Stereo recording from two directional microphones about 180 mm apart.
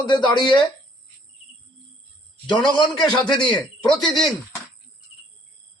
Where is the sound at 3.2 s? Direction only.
25° left (ahead or behind).